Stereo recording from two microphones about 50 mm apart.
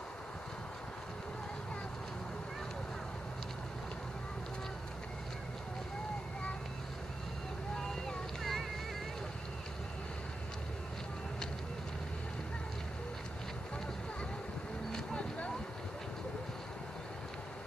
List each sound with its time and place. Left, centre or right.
7.9 s boat: centre
14.9 s vehicle: centre